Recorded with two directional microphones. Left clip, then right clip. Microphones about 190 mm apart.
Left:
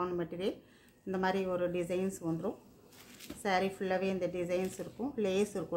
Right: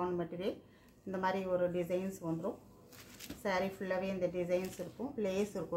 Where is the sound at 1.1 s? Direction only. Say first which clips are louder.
Left 1 dB; 45° left (ahead or behind).